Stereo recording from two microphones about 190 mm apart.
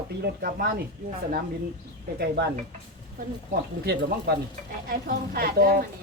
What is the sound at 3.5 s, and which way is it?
Speech, 55° right (ahead or behind).